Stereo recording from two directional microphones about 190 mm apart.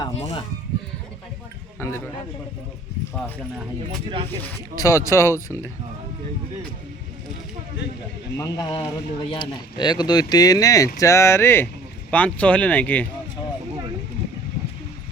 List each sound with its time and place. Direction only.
1.8 s speech: 10° left (ahead or behind)
4.8 s speech: 15° left (ahead or behind)
8.4 s speech: 20° left (ahead or behind)